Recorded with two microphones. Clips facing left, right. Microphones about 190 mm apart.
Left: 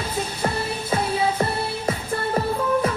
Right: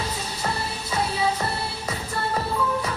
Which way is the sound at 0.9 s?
50° left (ahead or behind).